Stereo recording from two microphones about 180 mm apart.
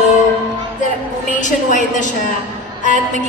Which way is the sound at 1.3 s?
45° left (ahead or behind).